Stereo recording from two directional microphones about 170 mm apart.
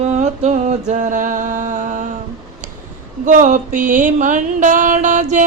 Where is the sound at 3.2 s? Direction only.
50° right (ahead or behind).